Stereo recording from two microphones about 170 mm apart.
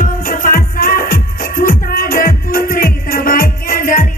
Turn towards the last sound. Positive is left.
turn(degrees=55)  # may be behind; listen again after turning